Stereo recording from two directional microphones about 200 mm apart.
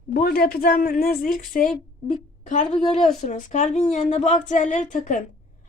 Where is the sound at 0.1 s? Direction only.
50° left (ahead or behind).